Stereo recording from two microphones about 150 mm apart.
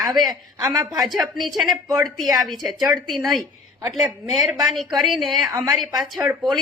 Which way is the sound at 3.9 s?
Centre (ahead or behind).